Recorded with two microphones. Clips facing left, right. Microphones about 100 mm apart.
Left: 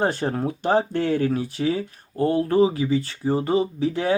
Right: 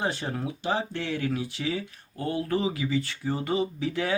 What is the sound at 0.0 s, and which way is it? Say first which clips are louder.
Speech: left 7 dB; 50° left (ahead or behind).